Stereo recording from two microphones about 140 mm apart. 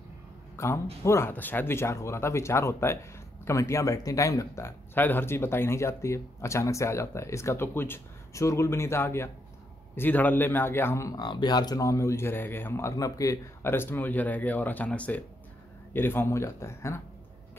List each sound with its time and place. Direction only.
1.0 s speech: 20° left (ahead or behind)